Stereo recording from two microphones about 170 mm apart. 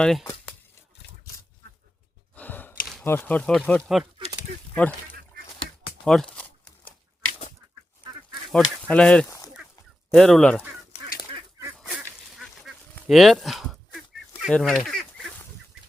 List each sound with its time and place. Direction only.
0.0 s speech: centre (ahead or behind)
2.3 s sigh: 10° left (ahead or behind)
3.0 s speech: 15° left (ahead or behind)
6.1 s crumpling: 5° left (ahead or behind)
8.5 s speech: 5° left (ahead or behind)
10.9 s goose: 35° left (ahead or behind)
11.8 s duck: centre (ahead or behind)
13.1 s speech: centre (ahead or behind)
14.4 s goose: centre (ahead or behind)